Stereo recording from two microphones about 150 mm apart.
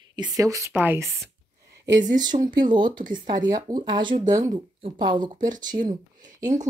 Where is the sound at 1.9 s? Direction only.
25° right (ahead or behind).